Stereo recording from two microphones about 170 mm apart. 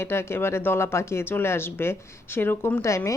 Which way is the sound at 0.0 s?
15° left (ahead or behind).